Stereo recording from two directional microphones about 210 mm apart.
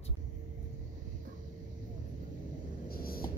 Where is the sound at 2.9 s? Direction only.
45° left (ahead or behind).